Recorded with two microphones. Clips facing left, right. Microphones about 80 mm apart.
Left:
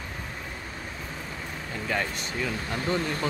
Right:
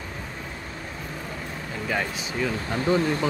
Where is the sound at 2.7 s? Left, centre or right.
Right.